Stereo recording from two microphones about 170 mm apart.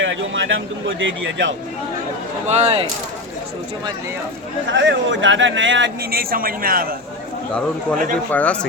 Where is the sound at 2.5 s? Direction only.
40° right (ahead or behind).